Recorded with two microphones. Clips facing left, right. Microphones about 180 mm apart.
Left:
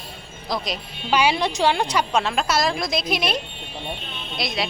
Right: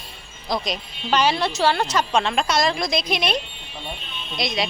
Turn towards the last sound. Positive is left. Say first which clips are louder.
# right 1 dB
turn(degrees=0)  # may be behind; listen again after turning